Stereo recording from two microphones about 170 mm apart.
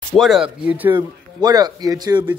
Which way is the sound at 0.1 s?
Centre (ahead or behind).